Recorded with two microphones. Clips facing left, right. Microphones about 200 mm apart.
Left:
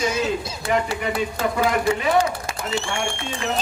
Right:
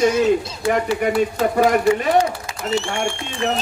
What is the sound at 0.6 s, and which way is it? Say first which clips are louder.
Speech: right 4 dB; 45° right (ahead or behind).